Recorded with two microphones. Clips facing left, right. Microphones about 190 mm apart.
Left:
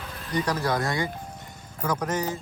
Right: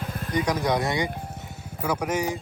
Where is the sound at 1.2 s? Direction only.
5° right (ahead or behind).